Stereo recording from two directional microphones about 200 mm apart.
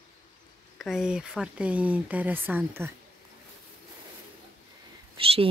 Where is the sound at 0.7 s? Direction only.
Centre (ahead or behind).